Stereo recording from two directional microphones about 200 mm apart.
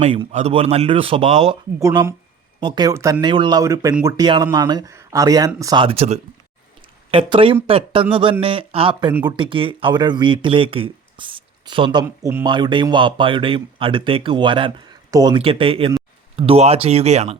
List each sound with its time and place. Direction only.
0.0 s speech: 30° right (ahead or behind)
1.8 s speech: 15° right (ahead or behind)
12.0 s speech: 10° right (ahead or behind); by 17.3 s 35° right (ahead or behind)